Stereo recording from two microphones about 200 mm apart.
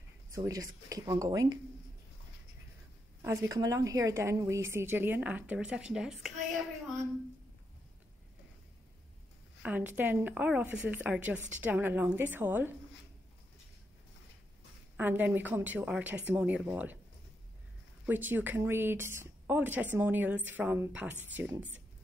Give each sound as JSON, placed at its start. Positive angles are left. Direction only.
{"t": 0.3, "sound": "speech", "side_deg": -15}
{"t": 3.2, "sound": "speech", "side_deg": -15}
{"t": 9.6, "sound": "speech", "side_deg": -10}
{"t": 15.0, "sound": "speech", "side_deg": -10}
{"t": 18.0, "sound": "speech", "side_deg": -10}